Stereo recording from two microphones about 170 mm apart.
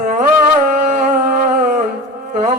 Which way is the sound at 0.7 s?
45° right (ahead or behind).